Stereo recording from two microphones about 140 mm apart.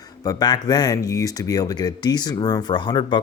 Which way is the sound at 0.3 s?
30° left (ahead or behind).